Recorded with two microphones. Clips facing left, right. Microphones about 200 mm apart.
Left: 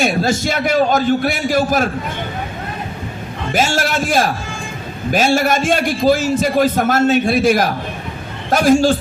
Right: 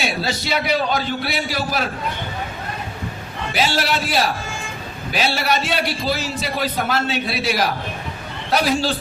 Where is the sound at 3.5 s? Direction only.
45° left (ahead or behind).